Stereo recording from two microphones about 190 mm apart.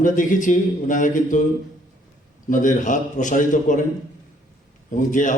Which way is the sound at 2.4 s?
45° left (ahead or behind).